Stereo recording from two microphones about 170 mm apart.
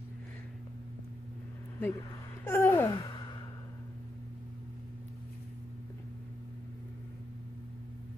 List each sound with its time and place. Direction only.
1.8 s speech: 15° left (ahead or behind)